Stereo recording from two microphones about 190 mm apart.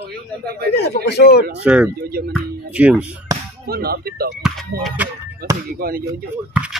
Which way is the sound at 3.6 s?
55° right (ahead or behind).